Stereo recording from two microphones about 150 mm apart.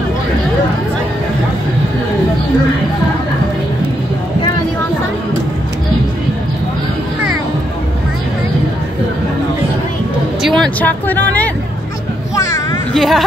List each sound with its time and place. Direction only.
10.4 s vehicle: 5° left (ahead or behind)
12.4 s a sound: 20° left (ahead or behind)
12.9 s speech: centre (ahead or behind)